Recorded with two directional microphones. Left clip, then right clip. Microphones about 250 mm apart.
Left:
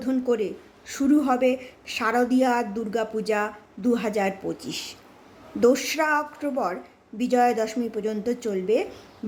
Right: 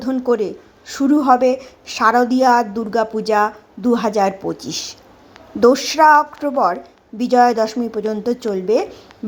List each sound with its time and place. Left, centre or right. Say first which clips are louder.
0.3 s a woman's voice: right 10 dB; centre